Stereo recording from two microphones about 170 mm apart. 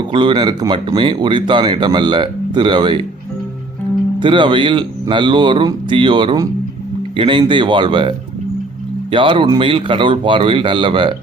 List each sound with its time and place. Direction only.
0.1 s speech: 30° right (ahead or behind)
4.2 s speech: 30° right (ahead or behind)
9.1 s speech: 30° right (ahead or behind)